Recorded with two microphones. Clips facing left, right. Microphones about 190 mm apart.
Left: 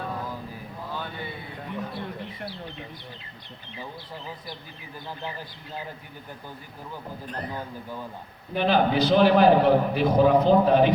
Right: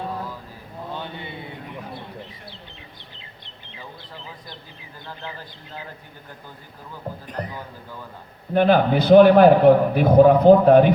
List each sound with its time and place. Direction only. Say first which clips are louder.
0.9 s mantra: right 2 dB; 25° right (ahead or behind)
5.0 s a man's voice: left 1 dB; 15° left (ahead or behind)
8.5 s a man's voice: right 5 dB; 55° right (ahead or behind)